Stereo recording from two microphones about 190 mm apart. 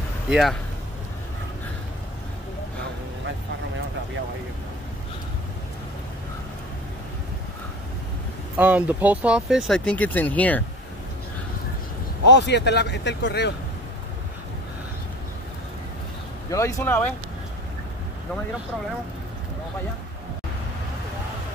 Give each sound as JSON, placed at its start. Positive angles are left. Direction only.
{"t": 0.3, "sound": "speech", "side_deg": 0}
{"t": 8.5, "sound": "speech", "side_deg": -10}
{"t": 12.3, "sound": "speech", "side_deg": 65}
{"t": 16.4, "sound": "speech", "side_deg": 15}